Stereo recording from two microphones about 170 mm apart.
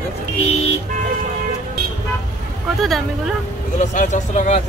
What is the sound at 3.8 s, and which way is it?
Speech, 45° left (ahead or behind).